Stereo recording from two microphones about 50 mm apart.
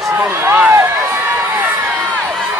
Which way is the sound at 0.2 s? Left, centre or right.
Right.